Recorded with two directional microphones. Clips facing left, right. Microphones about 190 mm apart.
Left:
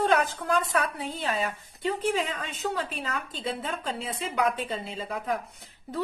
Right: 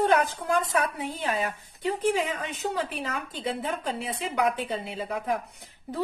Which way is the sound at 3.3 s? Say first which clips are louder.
Right 2 dB; 15° right (ahead or behind).